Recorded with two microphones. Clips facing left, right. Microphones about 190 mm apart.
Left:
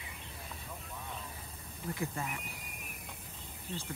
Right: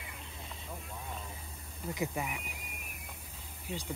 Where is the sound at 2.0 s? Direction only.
15° right (ahead or behind).